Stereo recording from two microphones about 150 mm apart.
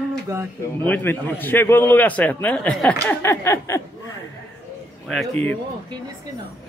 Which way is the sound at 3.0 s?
20° left (ahead or behind).